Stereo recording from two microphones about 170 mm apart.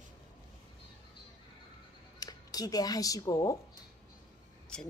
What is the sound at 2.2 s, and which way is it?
Speech, 20° left (ahead or behind).